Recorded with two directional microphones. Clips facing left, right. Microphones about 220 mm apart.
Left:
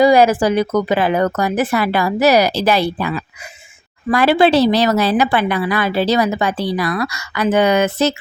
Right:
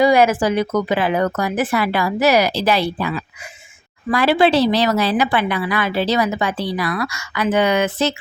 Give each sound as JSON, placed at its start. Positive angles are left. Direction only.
{"t": 0.0, "sound": "a woman's voice", "side_deg": 35}
{"t": 4.1, "sound": "a woman's voice", "side_deg": 50}